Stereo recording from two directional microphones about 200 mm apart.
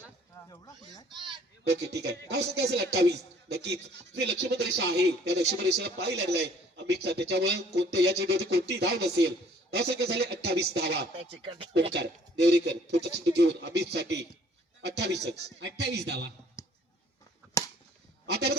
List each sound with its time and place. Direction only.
0.4 s speech: 20° left (ahead or behind)
1.6 s speech: 55° right (ahead or behind)
11.2 s speech: 25° right (ahead or behind)
11.9 s speech: 60° right (ahead or behind)
16.6 s a sound: 15° left (ahead or behind)
18.3 s speech: 55° right (ahead or behind)